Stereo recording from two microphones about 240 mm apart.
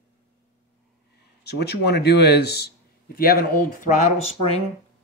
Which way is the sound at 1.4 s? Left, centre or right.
Left.